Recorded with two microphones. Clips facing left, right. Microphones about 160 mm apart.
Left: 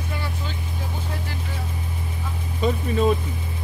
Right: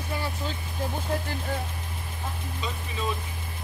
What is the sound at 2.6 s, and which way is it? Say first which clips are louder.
Speech: left 13 dB; 50° left (ahead or behind).